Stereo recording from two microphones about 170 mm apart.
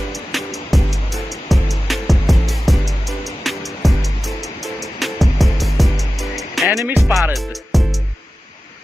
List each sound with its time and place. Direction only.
0.1 s music: centre (ahead or behind)